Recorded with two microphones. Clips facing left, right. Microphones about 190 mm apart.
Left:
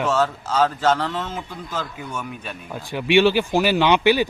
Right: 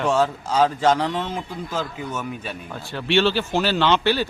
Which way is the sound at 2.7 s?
10° left (ahead or behind).